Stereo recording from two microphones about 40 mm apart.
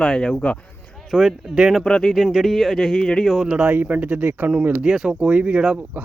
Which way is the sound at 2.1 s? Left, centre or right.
Centre.